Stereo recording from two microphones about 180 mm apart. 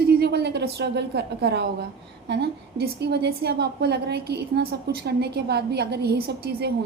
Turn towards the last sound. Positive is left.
turn(degrees=-60)  # may be behind; listen again after turning